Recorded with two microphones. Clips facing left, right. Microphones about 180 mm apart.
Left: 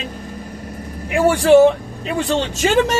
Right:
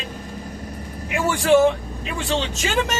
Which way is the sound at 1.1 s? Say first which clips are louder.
Left 6 dB; 35° left (ahead or behind).